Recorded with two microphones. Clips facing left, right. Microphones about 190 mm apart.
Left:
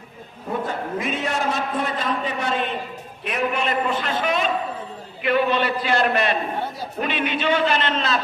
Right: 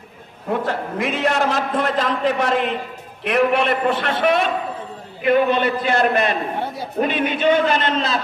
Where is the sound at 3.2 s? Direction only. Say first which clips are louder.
Right 7 dB; 70° right (ahead or behind).